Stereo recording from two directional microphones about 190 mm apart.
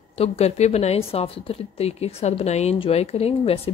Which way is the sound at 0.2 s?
35° left (ahead or behind).